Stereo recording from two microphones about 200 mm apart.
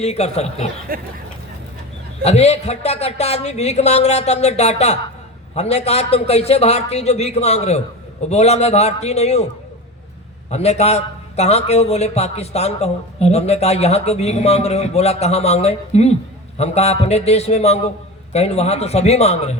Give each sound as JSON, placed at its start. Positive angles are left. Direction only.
{"t": 0.0, "sound": "a man's voice", "side_deg": 30}
{"t": 0.9, "sound": "speech", "side_deg": -45}
{"t": 2.2, "sound": "a man's voice", "side_deg": 30}
{"t": 10.5, "sound": "a man's voice", "side_deg": 35}